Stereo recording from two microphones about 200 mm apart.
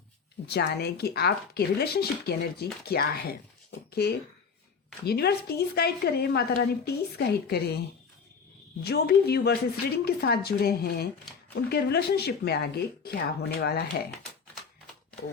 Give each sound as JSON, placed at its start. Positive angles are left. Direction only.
{"t": 0.4, "sound": "speech", "side_deg": 55}
{"t": 8.8, "sound": "speech", "side_deg": 50}